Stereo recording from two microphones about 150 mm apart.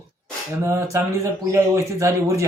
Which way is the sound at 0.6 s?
20° right (ahead or behind).